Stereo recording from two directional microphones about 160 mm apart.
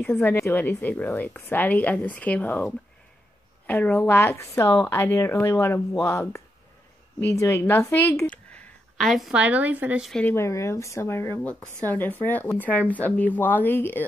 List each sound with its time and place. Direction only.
0.0 s a woman's voice: 15° left (ahead or behind); by 10.2 s 5° right (ahead or behind)
10.2 s a woman's voice: 15° left (ahead or behind)